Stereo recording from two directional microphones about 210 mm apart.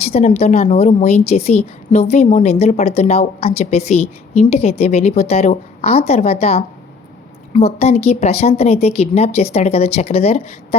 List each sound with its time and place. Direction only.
0.0 s a woman's voice: 30° left (ahead or behind)